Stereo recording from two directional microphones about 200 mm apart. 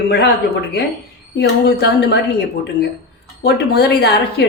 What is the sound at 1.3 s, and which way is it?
A woman's voice, 55° left (ahead or behind).